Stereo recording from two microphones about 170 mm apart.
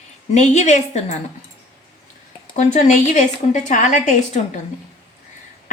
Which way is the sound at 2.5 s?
45° left (ahead or behind).